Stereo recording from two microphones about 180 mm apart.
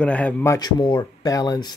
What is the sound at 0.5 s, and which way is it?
Speech, 25° left (ahead or behind).